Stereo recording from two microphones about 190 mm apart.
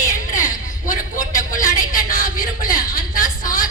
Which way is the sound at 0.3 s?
45° left (ahead or behind).